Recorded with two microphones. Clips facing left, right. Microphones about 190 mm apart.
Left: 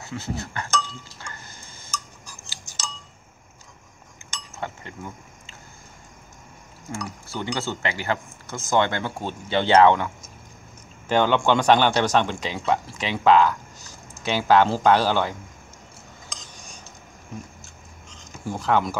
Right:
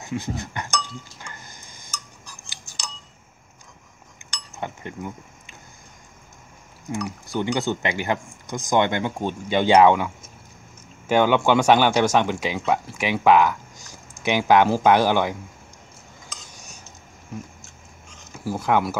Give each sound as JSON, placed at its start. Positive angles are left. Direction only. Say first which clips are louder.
{"t": 0.0, "sound": "a man's voice", "louder": "right 2 dB", "side_deg": -15}
{"t": 1.2, "sound": "music", "louder": "even", "side_deg": -15}
{"t": 4.2, "sound": "chink", "louder": "left 1 dB", "side_deg": -15}
{"t": 4.6, "sound": "speech", "louder": "right 2 dB", "side_deg": -20}
{"t": 6.9, "sound": "a man's voice", "louder": "right 5 dB", "side_deg": -15}
{"t": 16.3, "sound": "cutlery", "louder": "even", "side_deg": -10}
{"t": 18.1, "sound": "a sound", "louder": "right 3 dB", "side_deg": -5}